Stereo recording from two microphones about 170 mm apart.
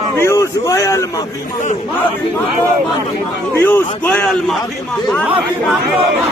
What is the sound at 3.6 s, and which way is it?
A man's voice, 15° left (ahead or behind).